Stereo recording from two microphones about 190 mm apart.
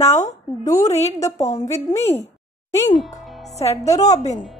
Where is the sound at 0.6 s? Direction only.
20° left (ahead or behind).